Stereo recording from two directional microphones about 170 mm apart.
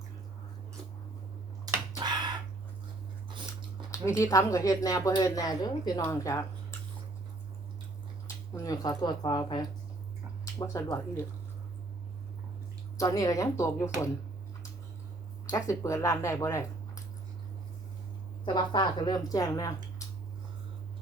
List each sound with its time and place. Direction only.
2.0 s bird: 25° right (ahead or behind)
3.2 s chewing: 25° right (ahead or behind)
3.9 s speech: 15° left (ahead or behind)
8.5 s speech: 20° left (ahead or behind)
13.0 s speech: 20° left (ahead or behind)
15.4 s speech: 20° left (ahead or behind)
18.4 s speech: 25° left (ahead or behind)